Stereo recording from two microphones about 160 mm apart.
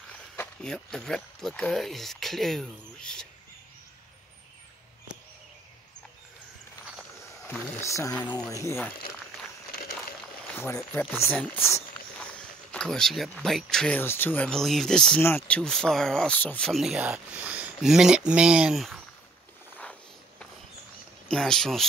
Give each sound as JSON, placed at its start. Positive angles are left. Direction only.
{"t": 0.4, "sound": "speech", "side_deg": 5}
{"t": 7.4, "sound": "speech", "side_deg": 15}
{"t": 10.5, "sound": "a sound", "side_deg": 15}
{"t": 11.0, "sound": "speech", "side_deg": 15}
{"t": 19.8, "sound": "a sound", "side_deg": 10}
{"t": 21.3, "sound": "speech", "side_deg": 5}